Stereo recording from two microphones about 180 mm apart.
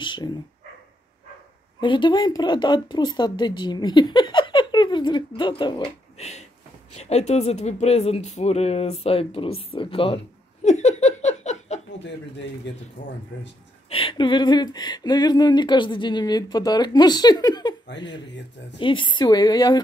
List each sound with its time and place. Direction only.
0.0 s speech: 25° left (ahead or behind)
1.8 s speech: 25° left (ahead or behind)
13.8 s speech: 30° left (ahead or behind)
18.2 s speech: 80° left
18.8 s speech: 30° left (ahead or behind)